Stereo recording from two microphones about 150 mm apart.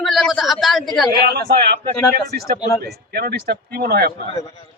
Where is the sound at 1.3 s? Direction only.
90° right.